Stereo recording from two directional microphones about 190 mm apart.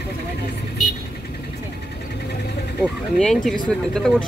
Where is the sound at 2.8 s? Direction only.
Centre (ahead or behind).